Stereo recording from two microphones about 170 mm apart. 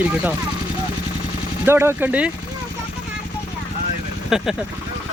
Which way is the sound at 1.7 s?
15° right (ahead or behind).